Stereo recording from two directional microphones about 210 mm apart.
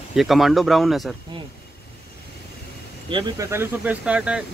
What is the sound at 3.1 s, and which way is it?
Speech, 15° right (ahead or behind).